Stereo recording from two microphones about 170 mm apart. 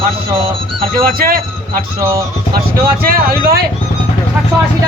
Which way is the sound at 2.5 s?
60° right (ahead or behind).